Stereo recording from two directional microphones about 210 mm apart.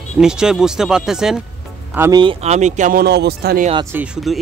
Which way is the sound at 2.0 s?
15° right (ahead or behind).